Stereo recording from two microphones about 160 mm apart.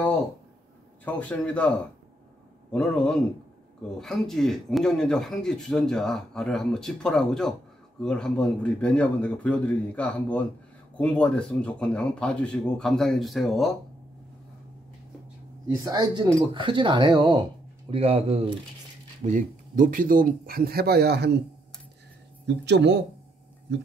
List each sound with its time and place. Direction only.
1.0 s a man's voice: 10° left (ahead or behind)
15.8 s speech: 25° right (ahead or behind)
17.8 s speech: 35° right (ahead or behind)
19.2 s speech: 55° right (ahead or behind); by 21.4 s 90° right
22.5 s speech: 90° right